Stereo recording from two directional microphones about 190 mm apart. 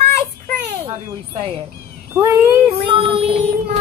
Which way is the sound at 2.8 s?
30° right (ahead or behind).